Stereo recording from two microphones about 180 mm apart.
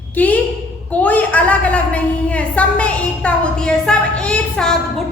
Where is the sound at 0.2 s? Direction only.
10° left (ahead or behind).